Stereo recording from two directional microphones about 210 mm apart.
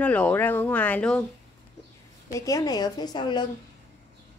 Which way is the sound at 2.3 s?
15° left (ahead or behind).